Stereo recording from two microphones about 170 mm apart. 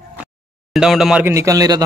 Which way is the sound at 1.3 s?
20° right (ahead or behind).